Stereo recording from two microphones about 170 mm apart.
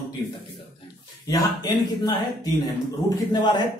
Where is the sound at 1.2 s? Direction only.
20° left (ahead or behind).